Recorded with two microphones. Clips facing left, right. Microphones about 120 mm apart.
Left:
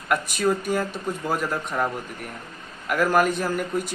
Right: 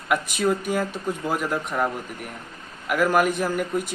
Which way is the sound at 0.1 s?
10° right (ahead or behind).